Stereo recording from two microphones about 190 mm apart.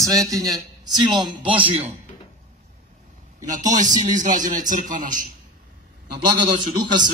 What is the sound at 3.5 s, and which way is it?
A man's voice, 40° right (ahead or behind).